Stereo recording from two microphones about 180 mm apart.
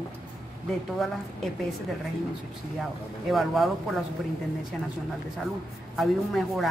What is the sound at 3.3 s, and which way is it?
Speech, centre (ahead or behind).